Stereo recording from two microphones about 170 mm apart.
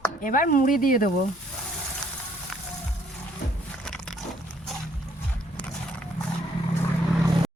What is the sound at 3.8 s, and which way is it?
Biting, 5° left (ahead or behind).